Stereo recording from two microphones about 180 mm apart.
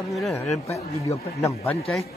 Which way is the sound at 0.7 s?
15° left (ahead or behind).